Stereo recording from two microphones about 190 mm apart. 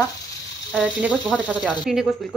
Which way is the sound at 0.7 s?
5° right (ahead or behind).